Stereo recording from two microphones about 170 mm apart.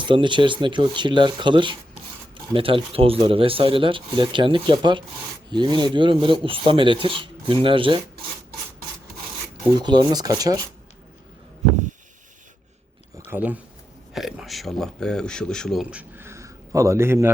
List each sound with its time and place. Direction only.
0.0 s rub: 30° right (ahead or behind)
2.5 s speech: 30° right (ahead or behind)
5.5 s rub: 25° right (ahead or behind)
9.7 s rub: 25° right (ahead or behind)
13.3 s speech: 10° right (ahead or behind)